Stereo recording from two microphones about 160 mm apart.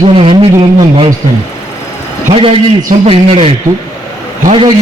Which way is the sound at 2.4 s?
35° right (ahead or behind).